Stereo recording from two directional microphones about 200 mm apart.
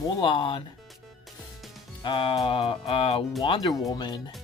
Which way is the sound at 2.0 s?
25° left (ahead or behind).